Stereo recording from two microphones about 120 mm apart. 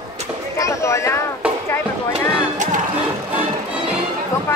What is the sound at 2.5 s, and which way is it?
Music, 90° right.